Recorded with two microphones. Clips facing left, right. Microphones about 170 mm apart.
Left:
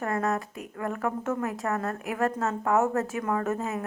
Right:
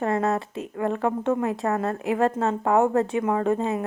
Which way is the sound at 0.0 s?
25° right (ahead or behind).